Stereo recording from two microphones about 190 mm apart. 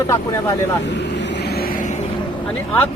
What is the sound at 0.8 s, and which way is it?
Vehicle, 65° left (ahead or behind).